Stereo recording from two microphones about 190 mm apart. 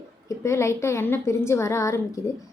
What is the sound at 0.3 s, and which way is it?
Speech, 15° left (ahead or behind).